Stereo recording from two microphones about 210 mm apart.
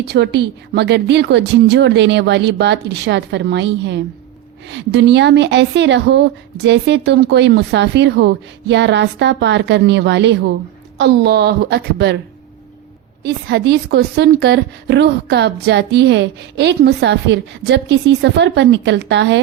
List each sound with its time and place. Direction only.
0.0 s a woman's voice: 55° right (ahead or behind)
13.2 s a woman's voice: 50° right (ahead or behind)